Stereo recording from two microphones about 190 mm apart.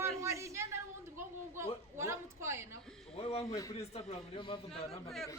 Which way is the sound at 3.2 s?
30° left (ahead or behind).